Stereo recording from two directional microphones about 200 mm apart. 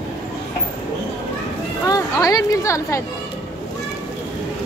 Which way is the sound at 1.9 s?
20° left (ahead or behind).